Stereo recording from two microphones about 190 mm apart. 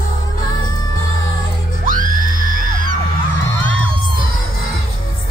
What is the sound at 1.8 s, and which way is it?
Music, 45° right (ahead or behind).